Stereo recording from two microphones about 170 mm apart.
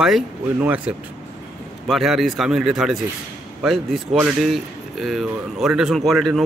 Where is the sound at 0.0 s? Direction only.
5° right (ahead or behind).